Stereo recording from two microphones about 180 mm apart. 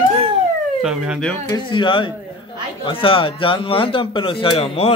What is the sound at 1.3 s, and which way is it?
Speech, 20° left (ahead or behind).